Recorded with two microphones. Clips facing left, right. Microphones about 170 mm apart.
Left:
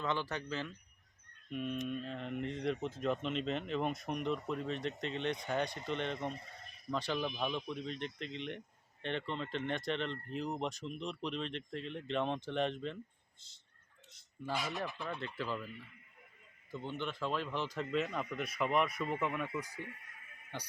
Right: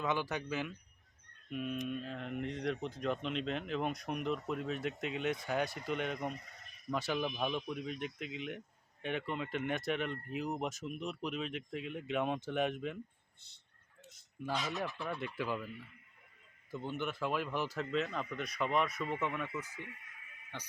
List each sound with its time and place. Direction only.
0.0 s speech: 10° right (ahead or behind)
6.1 s a sound: 25° left (ahead or behind)
6.9 s speech: 10° right (ahead or behind)
14.5 s speech: 10° left (ahead or behind)
15.0 s speech: 10° right (ahead or behind)
16.7 s speech: 10° right (ahead or behind)
17.9 s speech: 5° left (ahead or behind)